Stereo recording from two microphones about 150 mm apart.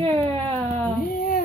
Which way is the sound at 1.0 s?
65° left (ahead or behind).